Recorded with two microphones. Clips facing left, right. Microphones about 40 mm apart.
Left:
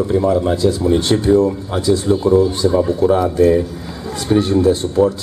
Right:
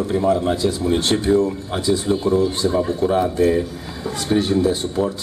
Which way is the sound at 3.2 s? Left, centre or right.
Right.